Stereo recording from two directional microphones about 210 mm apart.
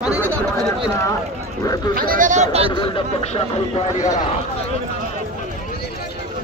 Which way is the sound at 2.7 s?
25° left (ahead or behind).